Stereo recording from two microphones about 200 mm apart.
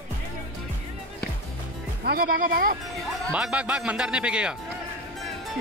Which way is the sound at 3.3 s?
5° right (ahead or behind).